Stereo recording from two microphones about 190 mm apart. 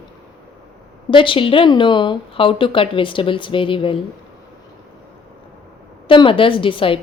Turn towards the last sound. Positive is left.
turn(degrees=25)  # may be behind; listen again after turning